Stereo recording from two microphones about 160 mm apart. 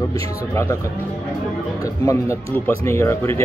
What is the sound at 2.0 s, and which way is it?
Speech, 20° left (ahead or behind).